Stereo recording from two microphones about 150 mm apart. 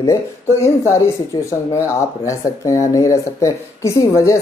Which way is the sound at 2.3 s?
20° left (ahead or behind).